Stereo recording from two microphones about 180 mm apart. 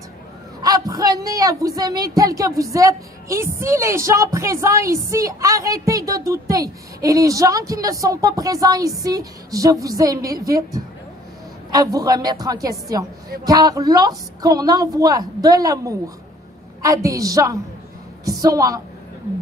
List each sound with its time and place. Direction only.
0.6 s a woman's voice: 20° right (ahead or behind)